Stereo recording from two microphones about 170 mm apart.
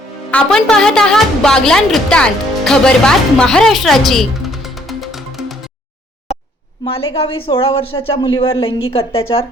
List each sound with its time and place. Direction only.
0.3 s a woman's voice: 5° left (ahead or behind)
6.8 s speech: 35° left (ahead or behind)